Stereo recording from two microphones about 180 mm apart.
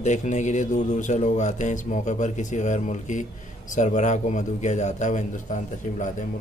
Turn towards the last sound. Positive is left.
turn(degrees=45)  # may be behind; listen again after turning